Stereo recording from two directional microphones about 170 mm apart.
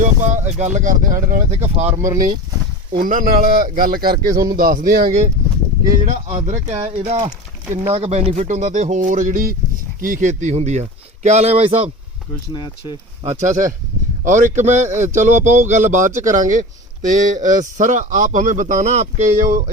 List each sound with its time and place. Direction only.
0.0 s speech: 45° right (ahead or behind)
1.7 s speech: 40° right (ahead or behind)
3.0 s speech: 50° right (ahead or behind)
4.1 s speech: 20° right (ahead or behind)
4.5 s speech: 55° right (ahead or behind); by 7.3 s 40° right (ahead or behind)
7.3 s speech: 15° right (ahead or behind)
7.9 s speech: 40° right (ahead or behind)
12.5 s speech: 25° left (ahead or behind)
13.2 s speech: 45° right (ahead or behind)